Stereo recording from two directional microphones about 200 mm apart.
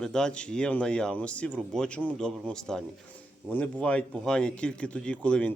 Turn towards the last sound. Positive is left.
turn(degrees=5)  # may be behind; listen again after turning